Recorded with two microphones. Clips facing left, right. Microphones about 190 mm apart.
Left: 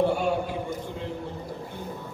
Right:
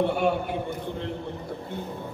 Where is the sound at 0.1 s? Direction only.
60° right (ahead or behind).